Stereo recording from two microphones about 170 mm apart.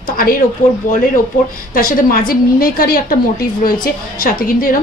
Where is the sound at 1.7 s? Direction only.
55° left (ahead or behind).